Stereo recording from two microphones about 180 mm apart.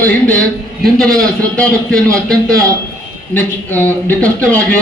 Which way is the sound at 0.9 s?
5° left (ahead or behind).